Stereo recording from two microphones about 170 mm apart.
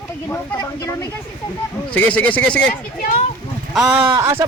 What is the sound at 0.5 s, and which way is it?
Speech, 20° left (ahead or behind).